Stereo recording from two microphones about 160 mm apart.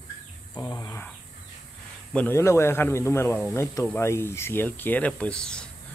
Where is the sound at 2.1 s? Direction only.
15° left (ahead or behind).